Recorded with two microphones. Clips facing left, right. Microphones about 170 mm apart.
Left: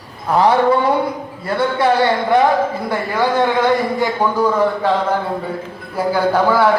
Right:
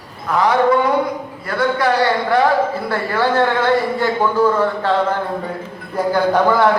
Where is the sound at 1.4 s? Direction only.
25° left (ahead or behind).